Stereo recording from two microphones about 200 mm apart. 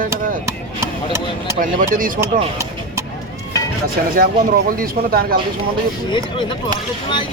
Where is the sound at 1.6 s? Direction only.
45° right (ahead or behind).